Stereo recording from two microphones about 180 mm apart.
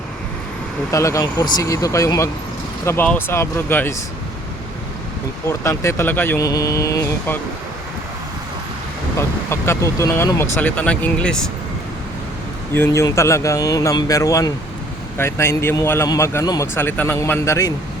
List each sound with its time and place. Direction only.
0.9 s a man's voice: 15° left (ahead or behind)
5.5 s a man's voice: 15° left (ahead or behind)
9.1 s a man's voice: 15° left (ahead or behind)
12.7 s a man's voice: 15° left (ahead or behind)